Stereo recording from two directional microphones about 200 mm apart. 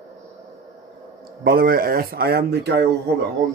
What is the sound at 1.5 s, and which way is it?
Speech, 50° right (ahead or behind).